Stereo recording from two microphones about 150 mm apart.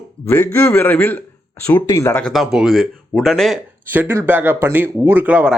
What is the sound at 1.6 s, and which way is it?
Speech, 25° left (ahead or behind).